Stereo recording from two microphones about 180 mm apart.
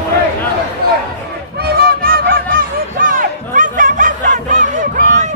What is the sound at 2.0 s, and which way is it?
Honk, 50° right (ahead or behind).